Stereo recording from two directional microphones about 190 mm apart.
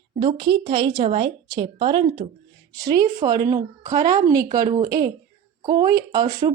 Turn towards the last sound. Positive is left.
turn(degrees=-20)  # may be behind; listen again after turning